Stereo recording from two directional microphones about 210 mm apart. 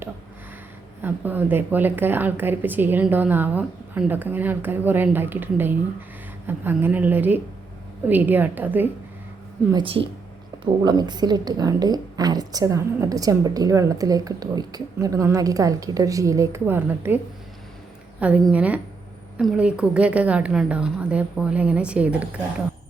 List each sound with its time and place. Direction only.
1.0 s a woman's voice: 10° right (ahead or behind)
9.7 s a woman's voice: 25° right (ahead or behind); by 17.2 s 10° right (ahead or behind)
18.2 s a woman's voice: 5° right (ahead or behind)